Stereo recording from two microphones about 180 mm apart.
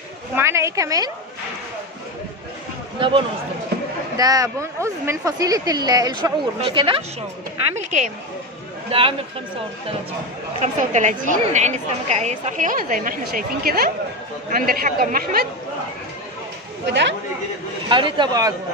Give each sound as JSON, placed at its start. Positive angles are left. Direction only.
{"t": 0.4, "sound": "a woman's voice", "side_deg": -15}
{"t": 3.0, "sound": "speech", "side_deg": -30}
{"t": 4.2, "sound": "speech", "side_deg": -20}
{"t": 7.7, "sound": "speech", "side_deg": -40}
{"t": 10.6, "sound": "a woman's voice", "side_deg": -40}
{"t": 16.8, "sound": "speech", "side_deg": -75}
{"t": 17.8, "sound": "speech", "side_deg": -25}